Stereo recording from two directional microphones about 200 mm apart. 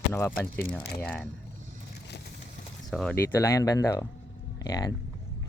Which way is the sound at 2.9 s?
5° left (ahead or behind).